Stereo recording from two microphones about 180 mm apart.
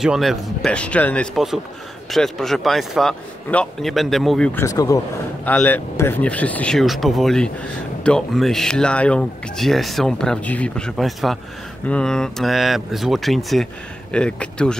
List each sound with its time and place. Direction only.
0.0 s speech: centre (ahead or behind)
4.6 s speech: 20° left (ahead or behind)
5.4 s speech: 10° left (ahead or behind)